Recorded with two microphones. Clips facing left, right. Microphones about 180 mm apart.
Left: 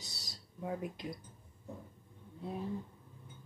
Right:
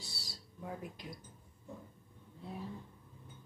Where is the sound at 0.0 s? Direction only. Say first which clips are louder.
Right 1 dB; 20° left (ahead or behind).